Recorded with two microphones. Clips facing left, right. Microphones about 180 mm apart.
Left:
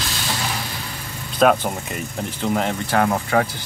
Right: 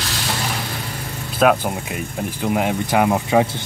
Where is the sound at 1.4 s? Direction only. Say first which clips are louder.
Even; 5° right (ahead or behind).